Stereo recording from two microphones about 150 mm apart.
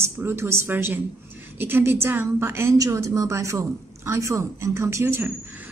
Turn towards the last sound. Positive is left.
turn(degrees=-15)  # may be behind; listen again after turning